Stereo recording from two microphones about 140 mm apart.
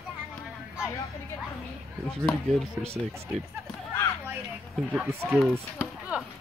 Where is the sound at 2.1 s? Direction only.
5° left (ahead or behind).